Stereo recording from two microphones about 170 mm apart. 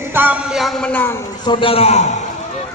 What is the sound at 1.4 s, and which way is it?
Speech, 30° left (ahead or behind).